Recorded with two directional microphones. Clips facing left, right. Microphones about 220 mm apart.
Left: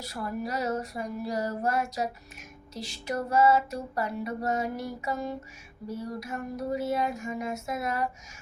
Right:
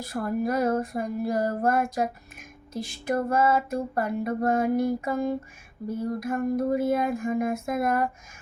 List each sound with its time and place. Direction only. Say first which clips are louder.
0.0 s female singing: right 6 dB; 50° right (ahead or behind)